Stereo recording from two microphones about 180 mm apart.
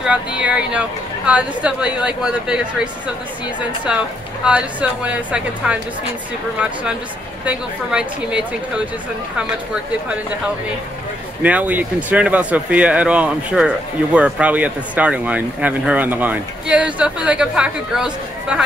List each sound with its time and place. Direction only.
0.0 s speech: 5° right (ahead or behind)
3.9 s speech: 5° right (ahead or behind)
11.4 s speech: 10° right (ahead or behind)